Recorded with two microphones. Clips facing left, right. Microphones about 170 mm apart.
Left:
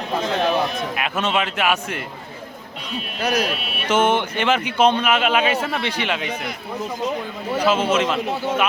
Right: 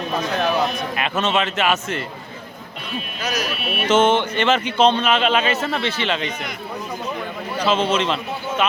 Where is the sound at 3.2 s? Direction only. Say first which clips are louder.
Left 5 dB; 60° left (ahead or behind).